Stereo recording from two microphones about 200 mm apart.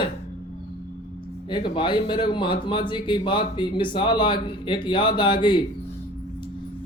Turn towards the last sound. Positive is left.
turn(degrees=25)  # may be behind; listen again after turning